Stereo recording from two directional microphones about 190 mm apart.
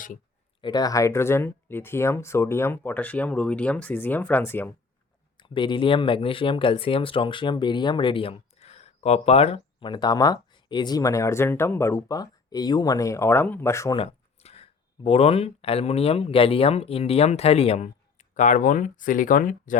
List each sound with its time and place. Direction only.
0.6 s speech: 20° left (ahead or behind)
5.4 s speech: 25° left (ahead or behind)
14.0 s speech: 35° left (ahead or behind)